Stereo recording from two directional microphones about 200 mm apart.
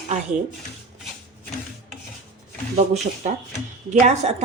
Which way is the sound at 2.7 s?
30° right (ahead or behind).